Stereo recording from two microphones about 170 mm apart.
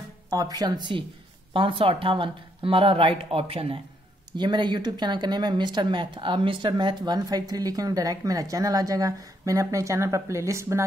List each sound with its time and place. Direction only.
0.3 s speech: 20° right (ahead or behind)